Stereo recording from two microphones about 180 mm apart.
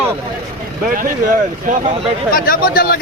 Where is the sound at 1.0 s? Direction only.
50° right (ahead or behind).